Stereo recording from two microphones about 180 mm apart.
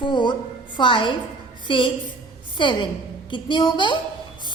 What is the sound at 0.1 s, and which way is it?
A woman's voice, 25° left (ahead or behind).